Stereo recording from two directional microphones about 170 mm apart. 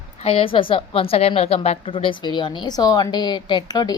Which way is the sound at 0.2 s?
35° left (ahead or behind).